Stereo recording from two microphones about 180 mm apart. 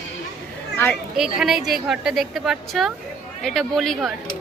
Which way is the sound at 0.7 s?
10° left (ahead or behind).